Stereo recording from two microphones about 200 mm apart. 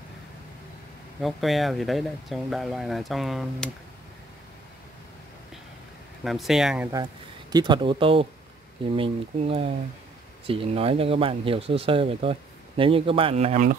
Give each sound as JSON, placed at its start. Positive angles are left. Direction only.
{"t": 1.2, "sound": "speech", "side_deg": 0}
{"t": 6.2, "sound": "speech", "side_deg": 0}
{"t": 7.5, "sound": "speech", "side_deg": -25}